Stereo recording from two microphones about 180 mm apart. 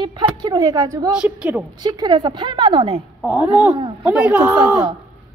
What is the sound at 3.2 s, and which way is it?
A woman's voice, 5° right (ahead or behind).